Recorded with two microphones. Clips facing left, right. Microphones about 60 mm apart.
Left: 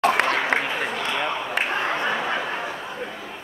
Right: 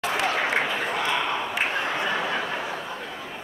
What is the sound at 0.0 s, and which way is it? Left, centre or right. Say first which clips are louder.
Applause: left 5 dB; left.